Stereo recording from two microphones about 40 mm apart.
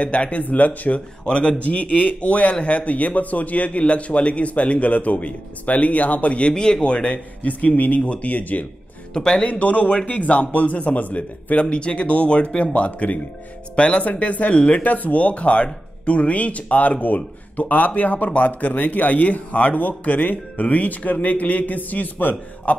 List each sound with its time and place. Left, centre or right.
0.0 s speech: left
7.4 s speech: left
9.1 s speech: left
9.5 s speech: left
11.5 s speech: left